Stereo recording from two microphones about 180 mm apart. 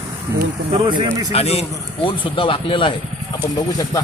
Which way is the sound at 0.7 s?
25° right (ahead or behind).